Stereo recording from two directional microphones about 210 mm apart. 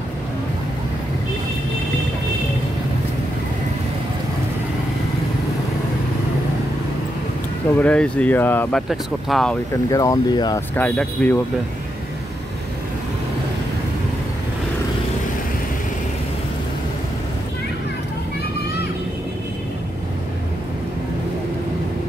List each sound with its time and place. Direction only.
7.8 s speech: 5° left (ahead or behind)
9.8 s speech: 15° left (ahead or behind)
10.8 s speech: 10° left (ahead or behind)